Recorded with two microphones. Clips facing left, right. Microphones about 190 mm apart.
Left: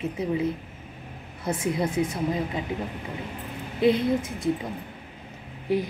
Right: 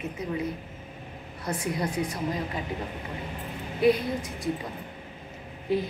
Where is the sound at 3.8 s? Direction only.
25° left (ahead or behind).